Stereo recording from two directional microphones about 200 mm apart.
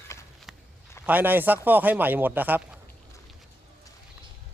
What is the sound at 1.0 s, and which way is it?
Speech, 10° right (ahead or behind).